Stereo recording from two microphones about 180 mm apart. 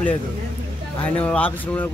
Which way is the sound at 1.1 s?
10° left (ahead or behind).